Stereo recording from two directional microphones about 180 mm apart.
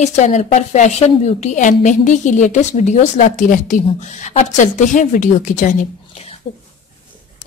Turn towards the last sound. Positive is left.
turn(degrees=45)  # may be behind; listen again after turning